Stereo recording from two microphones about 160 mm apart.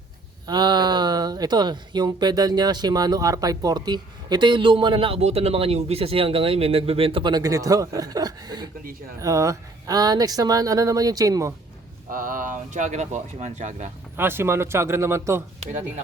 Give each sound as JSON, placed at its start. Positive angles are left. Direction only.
{"t": 0.4, "sound": "speech", "side_deg": -25}
{"t": 12.1, "sound": "speech", "side_deg": -55}
{"t": 14.2, "sound": "speech", "side_deg": -15}